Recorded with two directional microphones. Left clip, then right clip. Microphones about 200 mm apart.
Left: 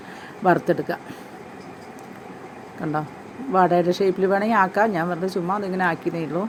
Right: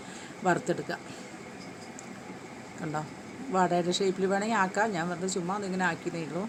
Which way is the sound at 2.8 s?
10° left (ahead or behind).